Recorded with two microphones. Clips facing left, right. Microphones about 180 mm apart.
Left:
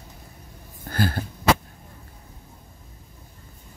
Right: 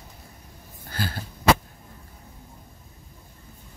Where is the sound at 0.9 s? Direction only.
50° left (ahead or behind).